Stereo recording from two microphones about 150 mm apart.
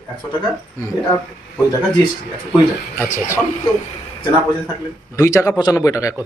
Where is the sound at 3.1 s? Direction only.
20° left (ahead or behind).